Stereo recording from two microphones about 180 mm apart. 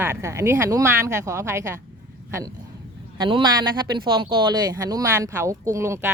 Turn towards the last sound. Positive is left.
turn(degrees=-15)  # may be behind; listen again after turning